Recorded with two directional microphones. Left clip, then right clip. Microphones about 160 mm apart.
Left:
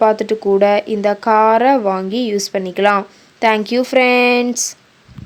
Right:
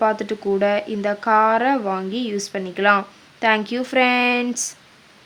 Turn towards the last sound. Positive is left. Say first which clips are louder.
# left 6 dB
turn(degrees=25)  # may be behind; listen again after turning